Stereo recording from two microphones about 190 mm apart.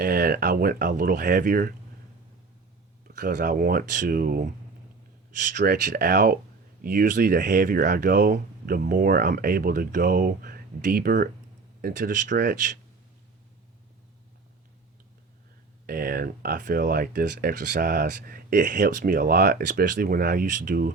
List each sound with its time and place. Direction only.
0.0 s speech: 50° right (ahead or behind)
3.1 s speech: 45° right (ahead or behind)
15.9 s speech: 50° right (ahead or behind)